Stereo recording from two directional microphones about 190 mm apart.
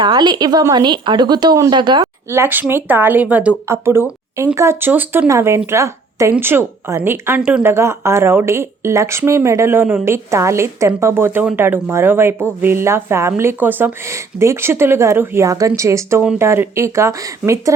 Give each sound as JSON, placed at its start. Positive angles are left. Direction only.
{"t": 0.0, "sound": "speech", "side_deg": -25}
{"t": 2.3, "sound": "speech", "side_deg": -10}